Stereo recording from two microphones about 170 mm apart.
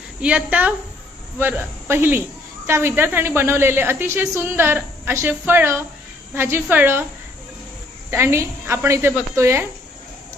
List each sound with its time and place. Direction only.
0.2 s speech: 5° right (ahead or behind)
8.1 s speech: 15° right (ahead or behind)